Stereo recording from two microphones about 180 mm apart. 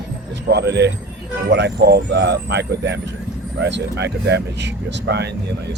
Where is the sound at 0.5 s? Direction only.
70° right (ahead or behind).